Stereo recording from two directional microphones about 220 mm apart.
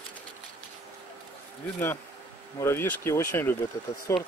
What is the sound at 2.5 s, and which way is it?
Speech, 10° left (ahead or behind).